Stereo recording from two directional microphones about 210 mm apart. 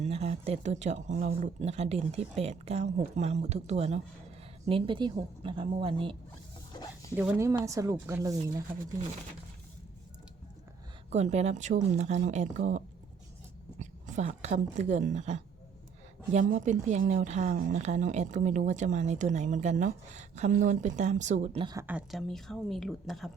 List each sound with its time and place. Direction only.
0.0 s a woman's voice: 30° right (ahead or behind)
7.2 s speech: 10° right (ahead or behind)
11.1 s a woman's voice: 30° right (ahead or behind)
21.8 s a woman's voice: 5° right (ahead or behind)